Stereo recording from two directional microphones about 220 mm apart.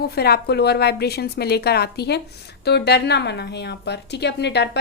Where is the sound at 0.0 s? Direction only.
45° left (ahead or behind).